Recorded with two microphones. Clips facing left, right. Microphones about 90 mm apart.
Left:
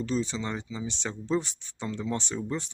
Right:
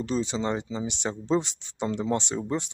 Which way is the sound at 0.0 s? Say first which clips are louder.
Right 2 dB; 20° right (ahead or behind).